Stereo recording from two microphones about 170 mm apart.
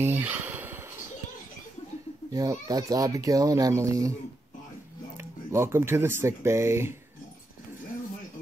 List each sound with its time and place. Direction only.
0.0 s a sound: 10° right (ahead or behind)
2.3 s speech: 20° right (ahead or behind)
5.1 s speech: 15° right (ahead or behind)